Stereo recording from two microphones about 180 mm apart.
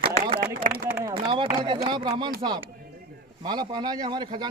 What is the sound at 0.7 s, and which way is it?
Speech, 45° right (ahead or behind).